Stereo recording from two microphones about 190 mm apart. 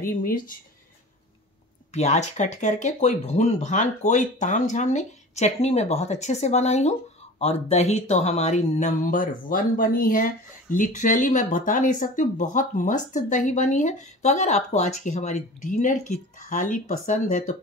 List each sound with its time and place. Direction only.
0.0 s speech: 50° left (ahead or behind)
1.9 s speech: 35° left (ahead or behind)